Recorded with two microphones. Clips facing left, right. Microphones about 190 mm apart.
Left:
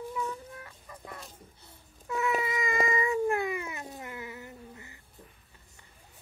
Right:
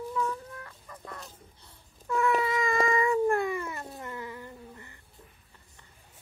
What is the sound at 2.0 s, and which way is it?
Cat, 20° left (ahead or behind).